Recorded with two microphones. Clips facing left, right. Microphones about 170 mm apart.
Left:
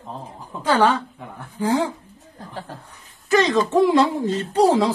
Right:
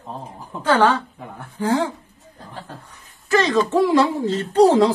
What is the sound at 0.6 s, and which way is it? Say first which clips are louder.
A woman's voice: right 1 dB; 15° left (ahead or behind).